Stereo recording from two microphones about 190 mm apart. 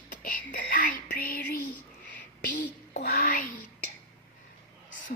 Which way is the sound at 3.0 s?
45° left (ahead or behind).